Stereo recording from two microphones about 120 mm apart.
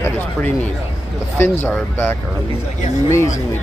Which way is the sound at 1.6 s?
20° left (ahead or behind).